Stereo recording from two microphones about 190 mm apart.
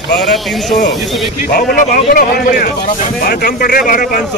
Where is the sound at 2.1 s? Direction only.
50° left (ahead or behind).